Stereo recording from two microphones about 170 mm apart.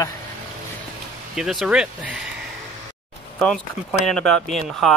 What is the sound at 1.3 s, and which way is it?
Speech, 5° right (ahead or behind).